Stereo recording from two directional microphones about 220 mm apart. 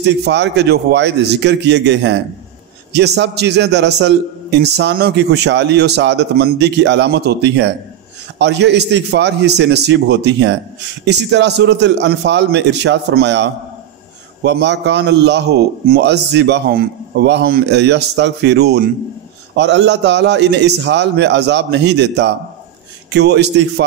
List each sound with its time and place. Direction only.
0.0 s a man's voice: 50° right (ahead or behind)